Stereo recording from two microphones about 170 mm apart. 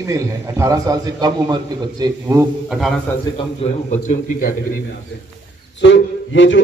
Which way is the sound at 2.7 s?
Centre (ahead or behind).